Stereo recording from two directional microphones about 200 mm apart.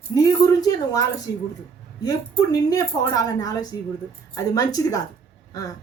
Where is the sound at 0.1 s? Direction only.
20° left (ahead or behind).